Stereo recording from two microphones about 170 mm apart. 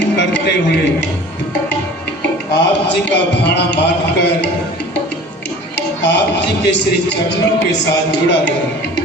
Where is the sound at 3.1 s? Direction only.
90° left.